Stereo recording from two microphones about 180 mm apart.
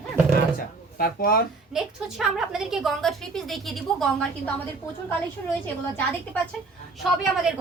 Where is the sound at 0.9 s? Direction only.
55° left (ahead or behind).